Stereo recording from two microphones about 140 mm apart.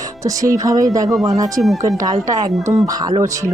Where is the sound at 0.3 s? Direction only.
25° right (ahead or behind).